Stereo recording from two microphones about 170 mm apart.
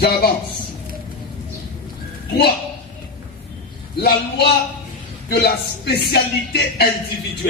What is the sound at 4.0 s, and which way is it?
Speech, 70° left (ahead or behind).